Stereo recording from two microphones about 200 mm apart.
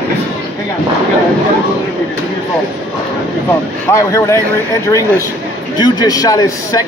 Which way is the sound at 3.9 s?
15° left (ahead or behind).